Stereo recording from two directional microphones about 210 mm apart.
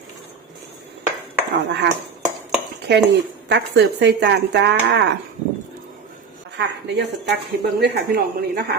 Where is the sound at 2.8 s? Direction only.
55° right (ahead or behind).